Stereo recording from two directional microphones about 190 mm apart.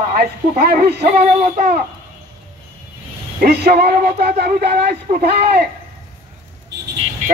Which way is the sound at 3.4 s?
55° right (ahead or behind).